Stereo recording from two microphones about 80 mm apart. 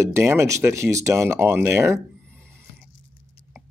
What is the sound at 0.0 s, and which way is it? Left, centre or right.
Speech, right.